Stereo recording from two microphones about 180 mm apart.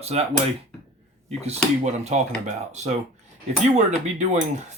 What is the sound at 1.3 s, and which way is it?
Speech, 35° right (ahead or behind).